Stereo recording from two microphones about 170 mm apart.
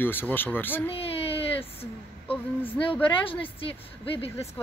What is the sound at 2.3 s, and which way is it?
Speech, 10° left (ahead or behind).